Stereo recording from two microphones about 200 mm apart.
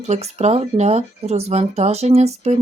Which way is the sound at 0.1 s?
35° right (ahead or behind).